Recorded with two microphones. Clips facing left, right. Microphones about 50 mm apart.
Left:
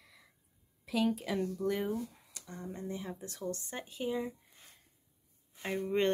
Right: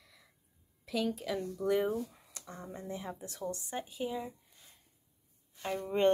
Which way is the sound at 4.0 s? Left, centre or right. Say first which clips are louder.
Left 4 dB; centre.